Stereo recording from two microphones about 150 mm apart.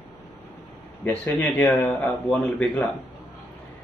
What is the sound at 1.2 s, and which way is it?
A man's voice, 15° left (ahead or behind).